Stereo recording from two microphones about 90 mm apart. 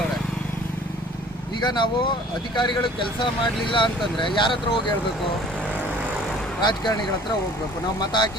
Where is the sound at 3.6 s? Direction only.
70° left (ahead or behind).